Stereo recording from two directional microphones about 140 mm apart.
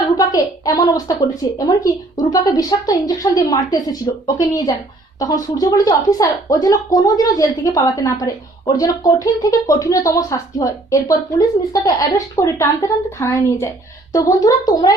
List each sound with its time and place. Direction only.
0.2 s speech: 25° left (ahead or behind)